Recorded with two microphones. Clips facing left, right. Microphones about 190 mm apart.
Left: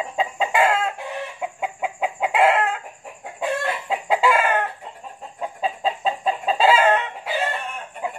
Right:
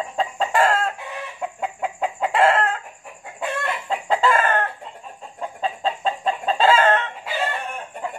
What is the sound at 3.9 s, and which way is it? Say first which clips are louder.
Chicken: even; 15° left (ahead or behind).